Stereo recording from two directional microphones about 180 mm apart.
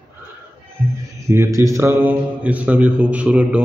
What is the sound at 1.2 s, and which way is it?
A man's voice, 15° right (ahead or behind).